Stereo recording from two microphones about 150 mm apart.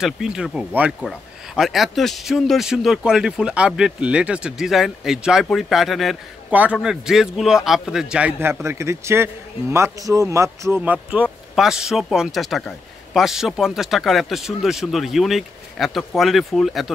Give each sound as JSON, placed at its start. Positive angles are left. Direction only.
{"t": 0.0, "sound": "a man's voice", "side_deg": -5}
{"t": 10.8, "sound": "speech", "side_deg": -10}